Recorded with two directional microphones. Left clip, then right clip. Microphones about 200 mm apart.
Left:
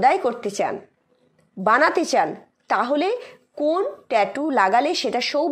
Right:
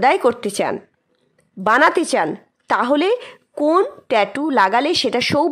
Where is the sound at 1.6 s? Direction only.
35° right (ahead or behind).